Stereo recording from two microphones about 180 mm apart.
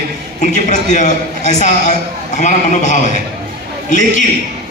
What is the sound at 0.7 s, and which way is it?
A man's voice, 40° left (ahead or behind).